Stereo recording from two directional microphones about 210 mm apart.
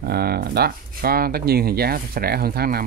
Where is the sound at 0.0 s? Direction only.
50° right (ahead or behind).